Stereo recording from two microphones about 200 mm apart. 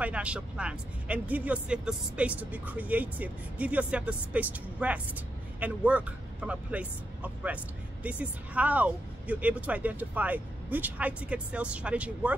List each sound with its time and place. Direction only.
0.0 s speech: 5° right (ahead or behind)